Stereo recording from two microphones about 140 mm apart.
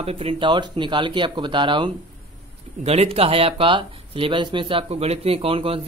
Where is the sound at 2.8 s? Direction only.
45° right (ahead or behind).